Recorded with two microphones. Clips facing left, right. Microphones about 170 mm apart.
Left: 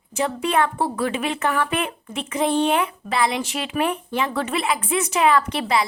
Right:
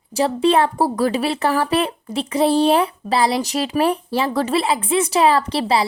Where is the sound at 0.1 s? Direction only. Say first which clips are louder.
Right 6 dB; 35° right (ahead or behind).